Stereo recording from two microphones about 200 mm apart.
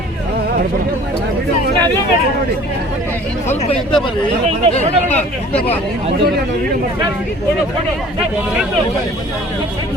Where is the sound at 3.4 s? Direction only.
30° left (ahead or behind).